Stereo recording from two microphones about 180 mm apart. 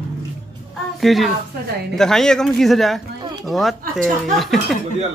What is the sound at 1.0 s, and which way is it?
A man's voice, centre (ahead or behind).